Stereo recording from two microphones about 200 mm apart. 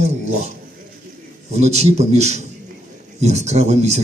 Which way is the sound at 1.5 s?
35° right (ahead or behind).